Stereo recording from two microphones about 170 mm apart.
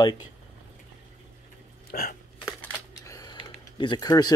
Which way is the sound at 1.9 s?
60° left (ahead or behind).